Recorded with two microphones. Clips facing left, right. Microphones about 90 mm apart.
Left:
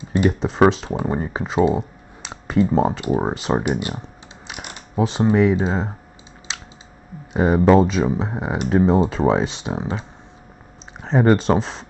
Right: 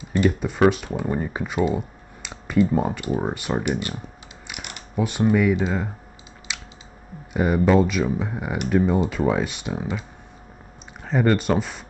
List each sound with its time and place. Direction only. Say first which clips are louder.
0.1 s speech: left 2 dB; 25° left (ahead or behind)
7.3 s speech: left 4 dB; 30° left (ahead or behind)